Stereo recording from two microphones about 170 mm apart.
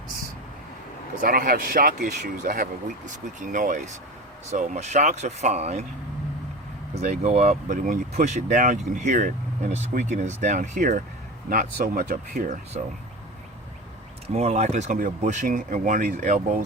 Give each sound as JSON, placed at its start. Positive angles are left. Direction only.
{"t": 1.2, "sound": "speech", "side_deg": -60}
{"t": 6.9, "sound": "speech", "side_deg": -40}
{"t": 14.3, "sound": "speech", "side_deg": -40}